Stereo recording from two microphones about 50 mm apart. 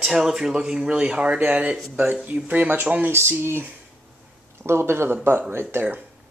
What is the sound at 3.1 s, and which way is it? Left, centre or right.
Speech, right.